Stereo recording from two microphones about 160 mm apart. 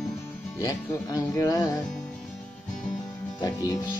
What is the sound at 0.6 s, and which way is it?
Speech, 25° left (ahead or behind).